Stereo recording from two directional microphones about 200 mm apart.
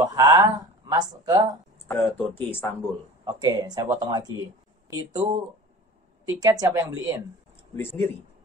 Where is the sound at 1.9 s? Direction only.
10° left (ahead or behind).